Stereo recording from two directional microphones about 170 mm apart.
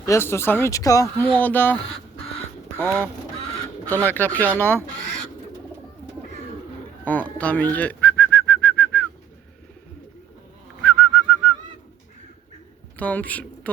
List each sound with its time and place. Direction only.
0.0 s speech: 15° left (ahead or behind)
7.0 s bird: 10° left (ahead or behind)
10.8 s bird: 5° left (ahead or behind)
13.0 s speech: 10° left (ahead or behind)